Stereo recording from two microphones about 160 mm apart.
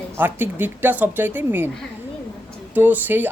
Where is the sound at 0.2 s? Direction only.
10° right (ahead or behind).